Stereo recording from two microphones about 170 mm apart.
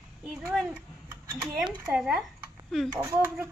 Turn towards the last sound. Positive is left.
turn(degrees=-15)  # may be behind; listen again after turning